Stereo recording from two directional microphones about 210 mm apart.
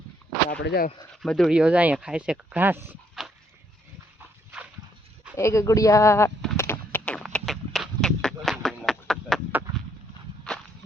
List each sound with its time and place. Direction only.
0.6 s speech: 50° left (ahead or behind)
1.1 s speech: centre (ahead or behind)
5.4 s speech: 15° left (ahead or behind)
6.6 s a sound: 10° left (ahead or behind)
10.5 s whip: centre (ahead or behind)